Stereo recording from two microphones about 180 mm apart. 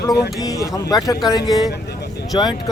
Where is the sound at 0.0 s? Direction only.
20° left (ahead or behind).